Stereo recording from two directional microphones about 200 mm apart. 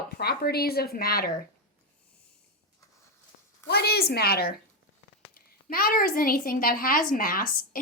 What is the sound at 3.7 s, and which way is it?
A woman's voice, 55° left (ahead or behind).